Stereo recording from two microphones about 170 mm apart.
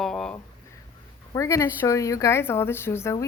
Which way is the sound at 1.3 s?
20° left (ahead or behind).